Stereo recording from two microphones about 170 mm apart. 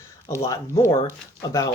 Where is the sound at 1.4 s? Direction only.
20° left (ahead or behind).